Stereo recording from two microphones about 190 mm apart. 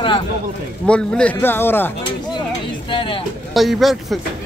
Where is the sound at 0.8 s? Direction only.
5° left (ahead or behind).